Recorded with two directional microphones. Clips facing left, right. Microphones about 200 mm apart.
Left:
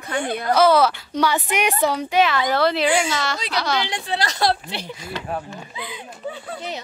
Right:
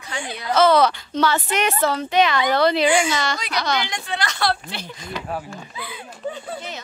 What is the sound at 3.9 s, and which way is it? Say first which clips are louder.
Speech: left 2 dB; 35° left (ahead or behind).